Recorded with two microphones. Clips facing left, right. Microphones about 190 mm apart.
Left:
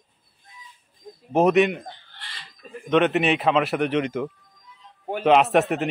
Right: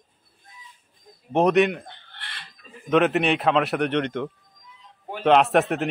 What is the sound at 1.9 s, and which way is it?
Chicken, 60° right (ahead or behind).